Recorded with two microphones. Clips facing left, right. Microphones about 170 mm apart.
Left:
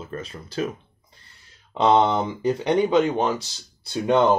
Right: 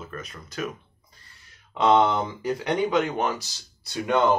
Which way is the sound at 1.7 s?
25° left (ahead or behind).